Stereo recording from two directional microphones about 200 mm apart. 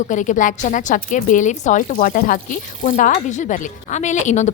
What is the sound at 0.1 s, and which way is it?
A woman's voice, 40° left (ahead or behind).